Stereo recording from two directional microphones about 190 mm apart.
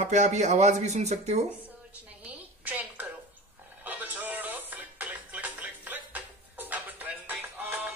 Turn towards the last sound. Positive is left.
turn(degrees=-10)  # may be behind; listen again after turning